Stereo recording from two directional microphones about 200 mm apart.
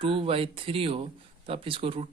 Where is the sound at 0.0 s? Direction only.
25° right (ahead or behind).